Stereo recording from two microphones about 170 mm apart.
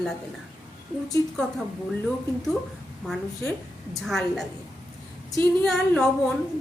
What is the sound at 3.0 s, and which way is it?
A woman's voice, centre (ahead or behind).